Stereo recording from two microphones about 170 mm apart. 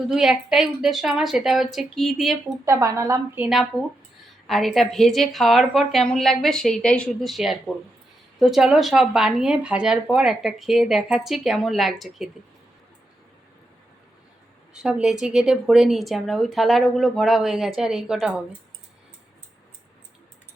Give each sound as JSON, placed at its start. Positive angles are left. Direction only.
{"t": 0.1, "sound": "speech", "side_deg": 0}
{"t": 2.6, "sound": "a woman's voice", "side_deg": -20}
{"t": 14.7, "sound": "speech", "side_deg": -5}